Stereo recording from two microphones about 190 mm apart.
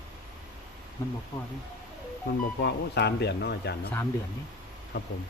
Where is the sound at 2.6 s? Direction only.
60° left (ahead or behind).